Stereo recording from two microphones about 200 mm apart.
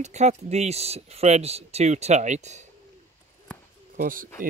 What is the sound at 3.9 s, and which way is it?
Speech, 45° right (ahead or behind).